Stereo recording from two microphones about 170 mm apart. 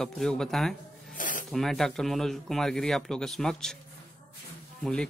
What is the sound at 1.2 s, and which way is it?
Snake, 50° left (ahead or behind).